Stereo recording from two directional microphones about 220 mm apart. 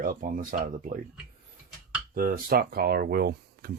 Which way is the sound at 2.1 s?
40° right (ahead or behind).